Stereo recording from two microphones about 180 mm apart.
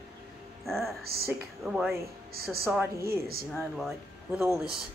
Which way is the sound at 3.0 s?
55° right (ahead or behind).